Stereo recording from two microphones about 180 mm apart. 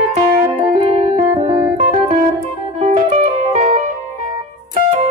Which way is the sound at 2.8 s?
40° right (ahead or behind).